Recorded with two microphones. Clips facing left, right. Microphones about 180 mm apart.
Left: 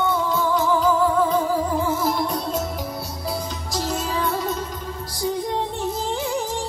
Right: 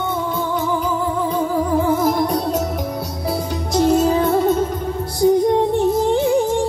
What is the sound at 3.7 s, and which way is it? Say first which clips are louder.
Music: right 11 dB; 60° right (ahead or behind).